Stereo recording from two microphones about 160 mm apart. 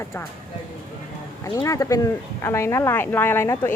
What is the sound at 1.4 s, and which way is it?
Speech, 20° left (ahead or behind).